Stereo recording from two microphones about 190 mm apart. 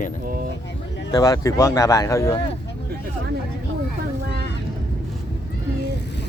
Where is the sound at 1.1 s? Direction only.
20° left (ahead or behind).